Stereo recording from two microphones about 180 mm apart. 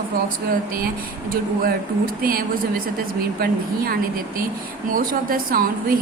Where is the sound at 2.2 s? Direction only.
55° right (ahead or behind).